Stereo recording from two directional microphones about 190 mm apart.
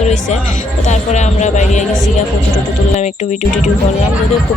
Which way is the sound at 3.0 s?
40° left (ahead or behind).